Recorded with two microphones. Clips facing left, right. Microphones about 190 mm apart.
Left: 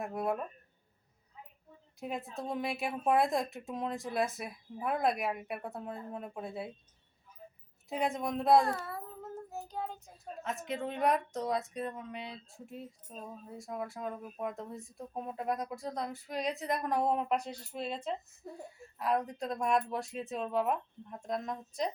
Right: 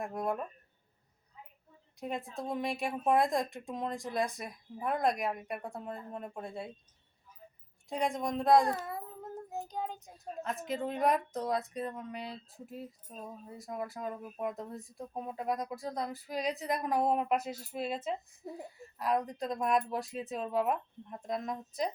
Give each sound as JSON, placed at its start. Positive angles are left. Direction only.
{"t": 0.0, "sound": "speech", "side_deg": 5}
{"t": 2.0, "sound": "speech", "side_deg": 0}
{"t": 7.9, "sound": "speech", "side_deg": 5}
{"t": 9.5, "sound": "child singing", "side_deg": -15}
{"t": 10.4, "sound": "speech", "side_deg": 0}